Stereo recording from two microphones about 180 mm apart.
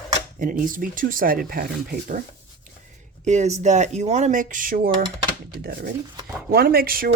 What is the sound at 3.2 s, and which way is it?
Speech, 40° right (ahead or behind).